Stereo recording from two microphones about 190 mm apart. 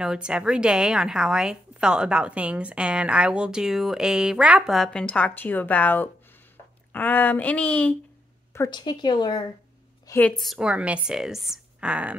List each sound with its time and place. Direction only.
0.0 s a woman's voice: 5° right (ahead or behind)
8.5 s speech: 20° left (ahead or behind)
10.0 s a woman's voice: 10° left (ahead or behind)
10.4 s a woman's voice: 5° right (ahead or behind)